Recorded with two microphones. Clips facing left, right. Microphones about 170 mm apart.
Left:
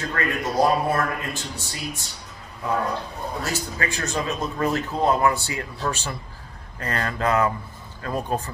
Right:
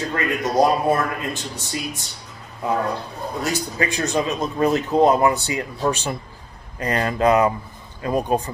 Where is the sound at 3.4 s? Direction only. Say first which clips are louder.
Right 6 dB; 15° right (ahead or behind).